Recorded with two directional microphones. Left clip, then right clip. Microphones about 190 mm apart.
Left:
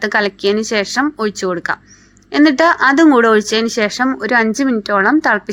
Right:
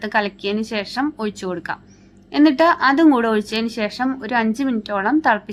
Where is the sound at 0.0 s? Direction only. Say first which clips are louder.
Left 6 dB; 25° left (ahead or behind).